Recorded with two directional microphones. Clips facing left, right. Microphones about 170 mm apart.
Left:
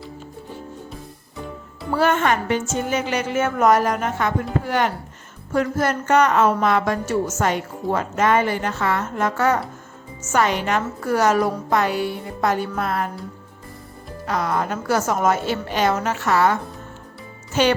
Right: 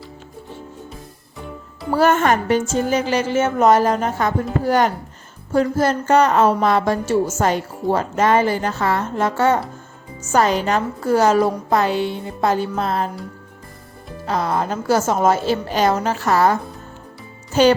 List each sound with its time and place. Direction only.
1.9 s speech: 40° right (ahead or behind)
14.3 s speech: 30° right (ahead or behind)
17.5 s music: 35° right (ahead or behind)